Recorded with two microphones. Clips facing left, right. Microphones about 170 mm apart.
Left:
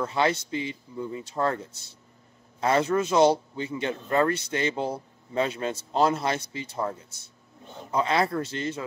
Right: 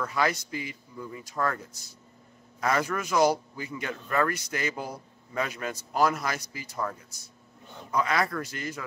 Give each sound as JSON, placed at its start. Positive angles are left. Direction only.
{"t": 0.0, "sound": "a man's voice", "side_deg": 25}